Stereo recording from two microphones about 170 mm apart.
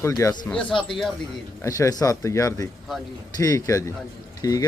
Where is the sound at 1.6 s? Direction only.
20° left (ahead or behind).